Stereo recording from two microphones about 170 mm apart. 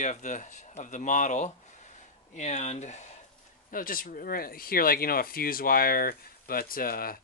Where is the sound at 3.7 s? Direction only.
55° left (ahead or behind).